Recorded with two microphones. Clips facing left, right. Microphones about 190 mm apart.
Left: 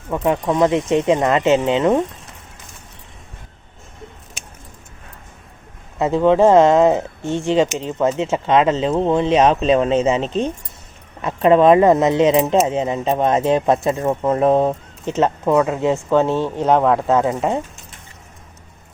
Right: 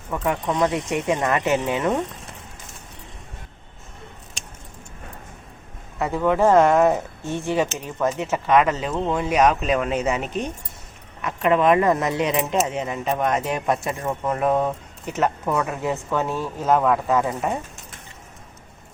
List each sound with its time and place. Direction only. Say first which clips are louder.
0.1 s speech: left 5 dB; 20° left (ahead or behind)
4.4 s keys jangling: left 2 dB; 5° left (ahead or behind)
6.0 s speech: left 6 dB; 25° left (ahead or behind)